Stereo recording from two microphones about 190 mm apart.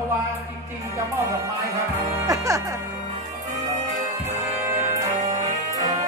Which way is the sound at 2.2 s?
15° right (ahead or behind).